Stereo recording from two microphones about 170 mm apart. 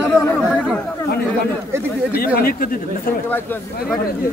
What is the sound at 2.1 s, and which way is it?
Speech, 65° left (ahead or behind).